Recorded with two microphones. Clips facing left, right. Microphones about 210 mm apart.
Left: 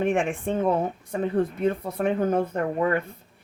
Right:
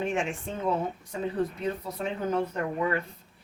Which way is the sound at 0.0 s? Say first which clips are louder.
Left 6 dB; 55° left (ahead or behind).